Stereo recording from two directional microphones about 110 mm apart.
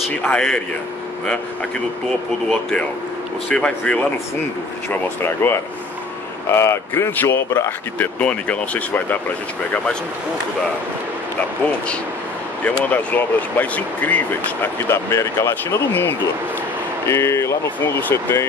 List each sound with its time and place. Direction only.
0.2 s speech: 10° left (ahead or behind)
3.4 s speech: 10° left (ahead or behind)
5.4 s speech: 20° left (ahead or behind)
12.6 s speech: 15° left (ahead or behind)